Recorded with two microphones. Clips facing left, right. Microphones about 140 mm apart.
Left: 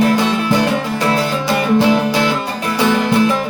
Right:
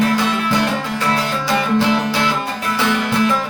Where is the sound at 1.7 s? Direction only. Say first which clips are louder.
Left 4 dB; 15° left (ahead or behind).